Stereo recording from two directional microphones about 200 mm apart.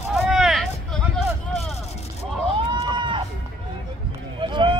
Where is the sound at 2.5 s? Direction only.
25° right (ahead or behind).